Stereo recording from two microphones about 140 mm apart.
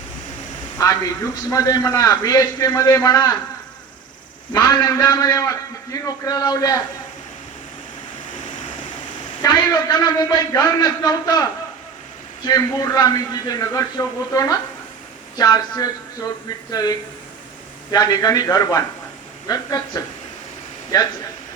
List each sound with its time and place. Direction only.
0.8 s a man's voice: 25° left (ahead or behind)
4.5 s a man's voice: 30° left (ahead or behind)
9.4 s a man's voice: 30° left (ahead or behind)
12.5 s a man's voice: 25° left (ahead or behind)